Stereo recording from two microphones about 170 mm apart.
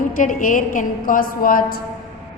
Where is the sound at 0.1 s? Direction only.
50° left (ahead or behind).